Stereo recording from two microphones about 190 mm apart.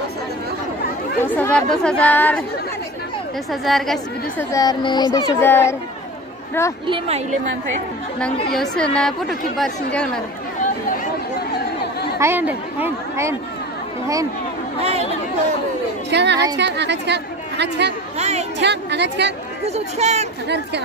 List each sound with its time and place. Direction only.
1.2 s speech: 10° left (ahead or behind)
3.6 s a woman's voice: centre (ahead or behind)
4.5 s speech: 20° left (ahead or behind)
6.9 s speech: 35° right (ahead or behind)
8.5 s a woman's voice: 5° left (ahead or behind)
12.2 s a woman's voice: 10° right (ahead or behind)
14.8 s speech: 35° right (ahead or behind)
16.1 s a woman's voice: 65° right (ahead or behind)
18.1 s a sound: 35° right (ahead or behind)
18.6 s a woman's voice: 65° right (ahead or behind)
19.6 s speech: 35° right (ahead or behind)
20.4 s a woman's voice: 65° right (ahead or behind)